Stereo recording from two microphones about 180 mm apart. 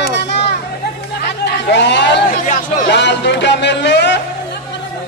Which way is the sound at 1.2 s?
70° left (ahead or behind).